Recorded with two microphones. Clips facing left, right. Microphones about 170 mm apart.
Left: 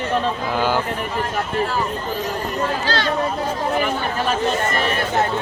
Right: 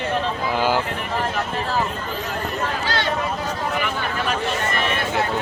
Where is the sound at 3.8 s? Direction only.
40° left (ahead or behind).